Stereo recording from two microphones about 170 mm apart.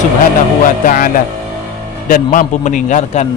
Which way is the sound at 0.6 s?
50° left (ahead or behind).